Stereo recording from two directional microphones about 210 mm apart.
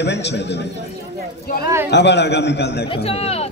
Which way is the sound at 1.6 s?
10° right (ahead or behind).